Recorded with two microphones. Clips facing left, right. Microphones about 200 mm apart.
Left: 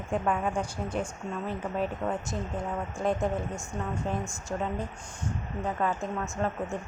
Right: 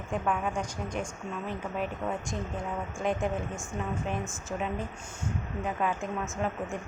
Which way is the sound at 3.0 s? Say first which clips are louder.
Left 2 dB; centre (ahead or behind).